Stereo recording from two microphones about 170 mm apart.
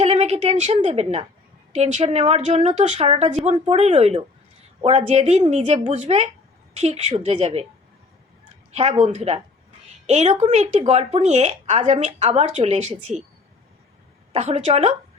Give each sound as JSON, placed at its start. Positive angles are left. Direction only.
{"t": 0.0, "sound": "a sound", "side_deg": -40}
{"t": 1.7, "sound": "a woman's voice", "side_deg": -40}
{"t": 8.7, "sound": "a woman's voice", "side_deg": -40}
{"t": 14.3, "sound": "a woman's voice", "side_deg": -40}